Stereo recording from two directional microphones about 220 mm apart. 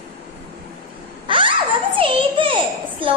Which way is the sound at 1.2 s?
20° right (ahead or behind).